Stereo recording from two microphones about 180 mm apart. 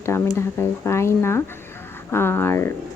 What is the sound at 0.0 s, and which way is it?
Speech, 15° left (ahead or behind).